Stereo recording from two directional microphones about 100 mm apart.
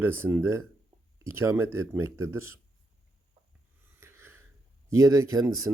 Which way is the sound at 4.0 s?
25° right (ahead or behind).